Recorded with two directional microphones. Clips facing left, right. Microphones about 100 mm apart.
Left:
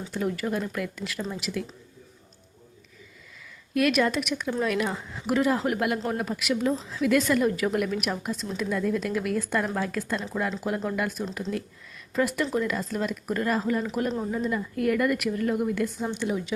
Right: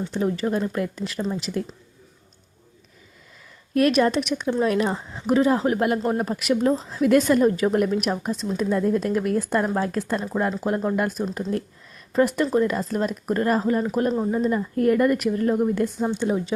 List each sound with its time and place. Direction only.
0.1 s speech: 30° right (ahead or behind)
3.8 s a woman's voice: 35° right (ahead or behind)
14.2 s speech: 25° right (ahead or behind)
14.4 s a woman's voice: 40° right (ahead or behind)